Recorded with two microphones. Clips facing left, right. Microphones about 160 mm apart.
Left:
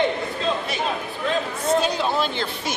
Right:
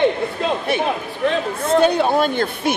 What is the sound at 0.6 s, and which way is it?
A man's voice, 60° right (ahead or behind).